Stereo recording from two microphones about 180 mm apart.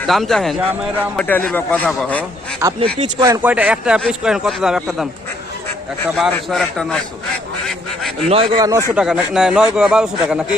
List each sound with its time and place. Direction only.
0.1 s a man's voice: centre (ahead or behind)
2.6 s a man's voice: 15° right (ahead or behind)
3.4 s a man's voice: 5° right (ahead or behind)
6.1 s a man's voice: centre (ahead or behind)
8.3 s a man's voice: 30° right (ahead or behind)
9.0 s a man's voice: 5° right (ahead or behind)